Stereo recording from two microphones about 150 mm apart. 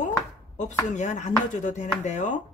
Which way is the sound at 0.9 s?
55° left (ahead or behind).